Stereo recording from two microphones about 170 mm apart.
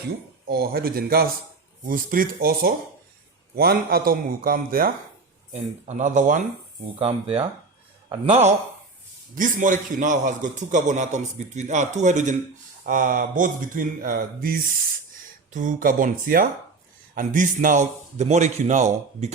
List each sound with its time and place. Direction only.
0.4 s a man's voice: 65° right (ahead or behind)
5.5 s a man's voice: 45° right (ahead or behind)
7.0 s a man's voice: 35° right (ahead or behind)